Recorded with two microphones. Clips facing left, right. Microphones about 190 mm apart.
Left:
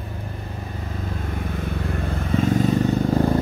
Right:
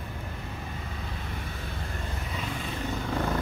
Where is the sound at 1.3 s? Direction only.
55° left (ahead or behind); by 3.4 s 40° left (ahead or behind).